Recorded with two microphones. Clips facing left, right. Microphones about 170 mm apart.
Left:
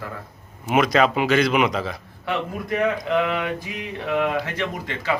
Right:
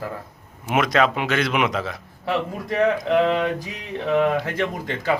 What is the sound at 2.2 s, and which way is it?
Speech, 30° right (ahead or behind).